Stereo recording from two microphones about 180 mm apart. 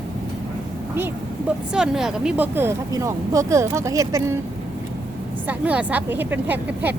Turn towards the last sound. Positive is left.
turn(degrees=-10)  # may be behind; listen again after turning